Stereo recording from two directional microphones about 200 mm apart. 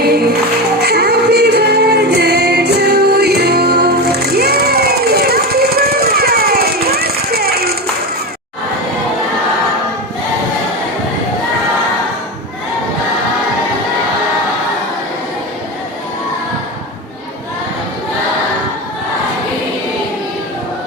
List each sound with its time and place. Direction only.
0.0 s music: 50° right (ahead or behind)